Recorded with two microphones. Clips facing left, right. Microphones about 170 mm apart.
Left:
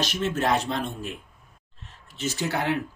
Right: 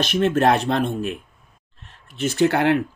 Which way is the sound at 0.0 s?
60° right (ahead or behind).